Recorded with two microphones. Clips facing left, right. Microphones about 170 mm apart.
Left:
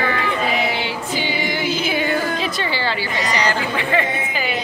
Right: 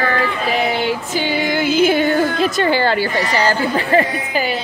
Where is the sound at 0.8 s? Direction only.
45° right (ahead or behind).